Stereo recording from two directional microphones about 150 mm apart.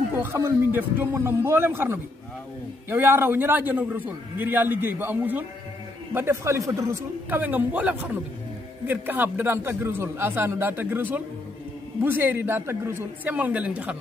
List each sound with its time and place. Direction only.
0.1 s a man's voice: 15° right (ahead or behind)